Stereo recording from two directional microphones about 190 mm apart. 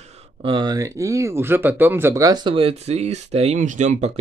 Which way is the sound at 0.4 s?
25° right (ahead or behind).